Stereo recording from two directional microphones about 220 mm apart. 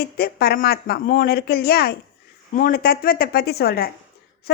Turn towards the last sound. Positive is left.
turn(degrees=45)  # may be behind; listen again after turning